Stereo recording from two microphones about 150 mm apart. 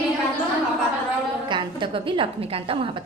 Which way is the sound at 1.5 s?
30° right (ahead or behind).